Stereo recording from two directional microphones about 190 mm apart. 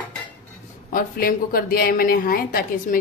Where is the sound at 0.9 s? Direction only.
50° left (ahead or behind).